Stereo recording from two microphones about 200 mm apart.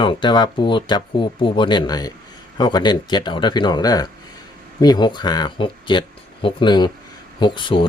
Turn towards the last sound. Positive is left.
turn(degrees=25)  # may be behind; listen again after turning